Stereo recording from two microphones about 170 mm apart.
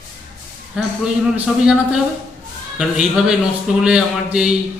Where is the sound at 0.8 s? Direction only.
5° right (ahead or behind).